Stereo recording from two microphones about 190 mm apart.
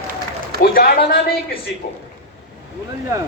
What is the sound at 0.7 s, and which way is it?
Speech, 50° left (ahead or behind).